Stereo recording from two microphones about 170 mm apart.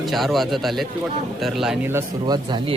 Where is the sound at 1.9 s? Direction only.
20° right (ahead or behind).